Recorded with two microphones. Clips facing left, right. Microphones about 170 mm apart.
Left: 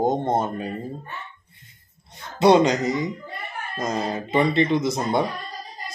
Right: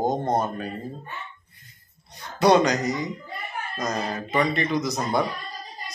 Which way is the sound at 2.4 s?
25° left (ahead or behind).